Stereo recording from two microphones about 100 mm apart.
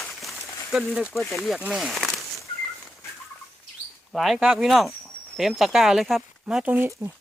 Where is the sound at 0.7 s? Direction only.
Centre (ahead or behind).